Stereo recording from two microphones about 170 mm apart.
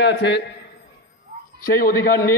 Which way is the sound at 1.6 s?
60° left (ahead or behind).